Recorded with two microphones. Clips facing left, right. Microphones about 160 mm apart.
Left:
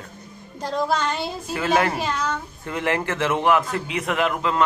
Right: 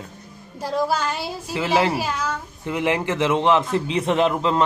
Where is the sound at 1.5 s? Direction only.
20° right (ahead or behind).